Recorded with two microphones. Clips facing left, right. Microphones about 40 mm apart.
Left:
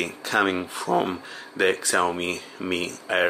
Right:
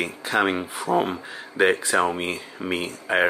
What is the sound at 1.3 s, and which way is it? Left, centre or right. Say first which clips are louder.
Speech: right 4 dB; centre.